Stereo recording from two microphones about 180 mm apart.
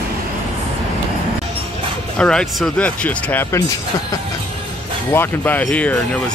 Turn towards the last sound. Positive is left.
turn(degrees=5)  # may be behind; listen again after turning